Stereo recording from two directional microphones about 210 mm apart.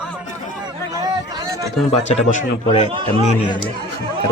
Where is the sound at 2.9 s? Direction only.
25° right (ahead or behind).